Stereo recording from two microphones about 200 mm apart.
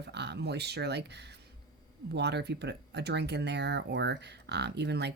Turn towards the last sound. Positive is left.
turn(degrees=-55)  # may be behind; listen again after turning